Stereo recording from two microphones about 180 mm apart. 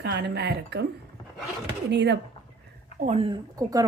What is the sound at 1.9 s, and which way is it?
Speech, 70° right (ahead or behind).